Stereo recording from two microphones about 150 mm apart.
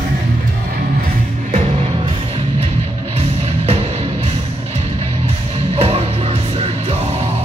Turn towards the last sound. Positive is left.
turn(degrees=-40)  # may be behind; listen again after turning